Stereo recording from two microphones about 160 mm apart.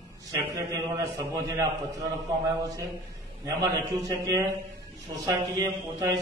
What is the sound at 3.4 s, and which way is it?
A man's voice, 20° right (ahead or behind).